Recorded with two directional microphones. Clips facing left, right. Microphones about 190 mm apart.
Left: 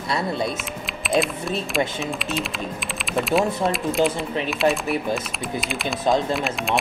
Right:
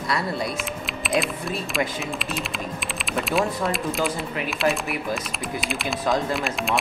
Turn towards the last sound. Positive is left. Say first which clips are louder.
# left 1 dB
turn(degrees=0)  # may be behind; listen again after turning